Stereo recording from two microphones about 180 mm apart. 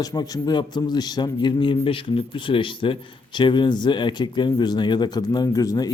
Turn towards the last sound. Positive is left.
turn(degrees=20)  # may be behind; listen again after turning